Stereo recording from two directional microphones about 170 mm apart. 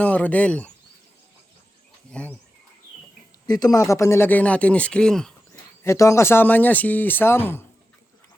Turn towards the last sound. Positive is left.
turn(degrees=15)  # may be behind; listen again after turning